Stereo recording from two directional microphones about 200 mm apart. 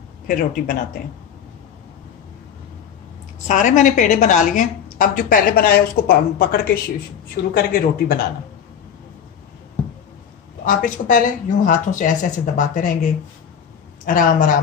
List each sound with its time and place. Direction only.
0.3 s speech: 40° left (ahead or behind)
3.4 s a woman's voice: 35° left (ahead or behind)
10.6 s a woman's voice: 45° left (ahead or behind)